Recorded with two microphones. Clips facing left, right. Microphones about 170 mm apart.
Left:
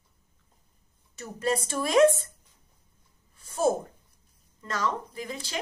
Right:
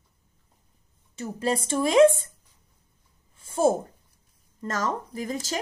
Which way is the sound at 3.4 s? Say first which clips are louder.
Right 3 dB; 30° right (ahead or behind).